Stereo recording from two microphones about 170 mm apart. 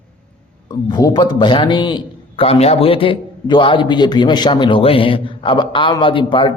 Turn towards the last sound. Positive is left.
turn(degrees=30)  # may be behind; listen again after turning